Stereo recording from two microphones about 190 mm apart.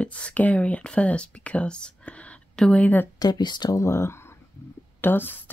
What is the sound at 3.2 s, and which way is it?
Speech, 20° left (ahead or behind).